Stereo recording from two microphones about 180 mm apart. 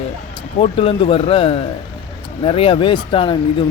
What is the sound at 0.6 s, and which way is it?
Speech, 30° left (ahead or behind).